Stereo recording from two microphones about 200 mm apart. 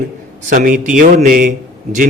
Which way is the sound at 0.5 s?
40° right (ahead or behind).